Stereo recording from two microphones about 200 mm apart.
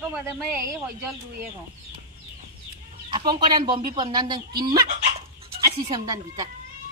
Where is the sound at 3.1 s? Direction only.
20° right (ahead or behind).